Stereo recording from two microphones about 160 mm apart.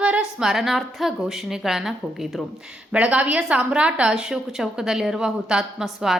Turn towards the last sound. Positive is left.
turn(degrees=-5)  # may be behind; listen again after turning